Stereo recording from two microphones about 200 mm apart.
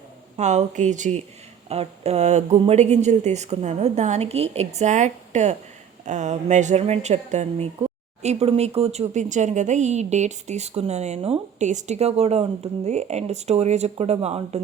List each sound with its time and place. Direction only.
0.3 s speech: 35° right (ahead or behind)